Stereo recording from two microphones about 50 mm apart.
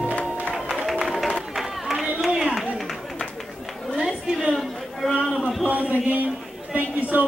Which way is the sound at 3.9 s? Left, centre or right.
Centre.